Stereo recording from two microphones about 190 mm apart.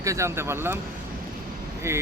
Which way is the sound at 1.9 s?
15° right (ahead or behind).